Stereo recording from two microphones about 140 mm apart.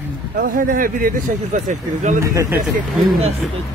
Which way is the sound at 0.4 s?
75° right (ahead or behind).